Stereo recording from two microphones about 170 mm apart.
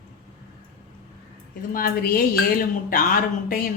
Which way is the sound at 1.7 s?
60° left (ahead or behind).